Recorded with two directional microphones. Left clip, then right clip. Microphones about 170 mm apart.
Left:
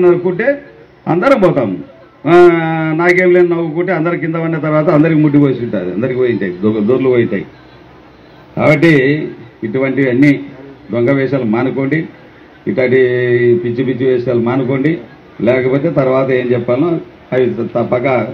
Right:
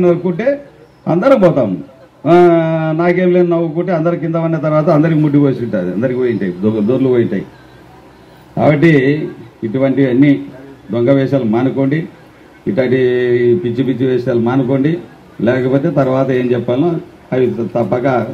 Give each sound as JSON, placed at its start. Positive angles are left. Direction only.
{"t": 0.0, "sound": "a man's voice", "side_deg": -90}
{"t": 8.5, "sound": "a man's voice", "side_deg": -80}